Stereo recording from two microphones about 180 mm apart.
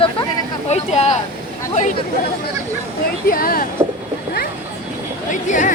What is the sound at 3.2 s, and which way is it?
Speech, 55° left (ahead or behind).